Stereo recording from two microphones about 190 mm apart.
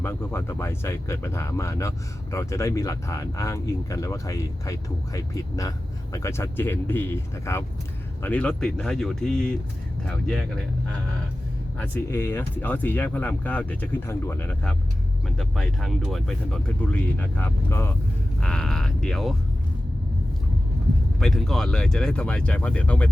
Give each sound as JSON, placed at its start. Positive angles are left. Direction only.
{"t": 0.0, "sound": "speech", "side_deg": 10}
{"t": 11.8, "sound": "speech", "side_deg": 10}
{"t": 21.2, "sound": "speech", "side_deg": 0}